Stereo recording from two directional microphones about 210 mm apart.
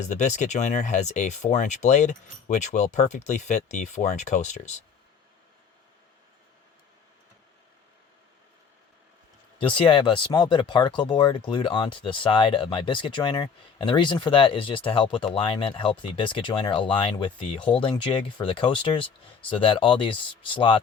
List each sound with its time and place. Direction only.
0.0 s speech: 35° left (ahead or behind)
9.6 s speech: 25° left (ahead or behind)